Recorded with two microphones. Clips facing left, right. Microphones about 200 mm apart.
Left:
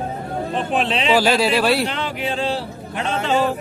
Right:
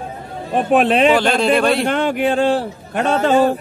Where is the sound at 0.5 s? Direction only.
55° right (ahead or behind).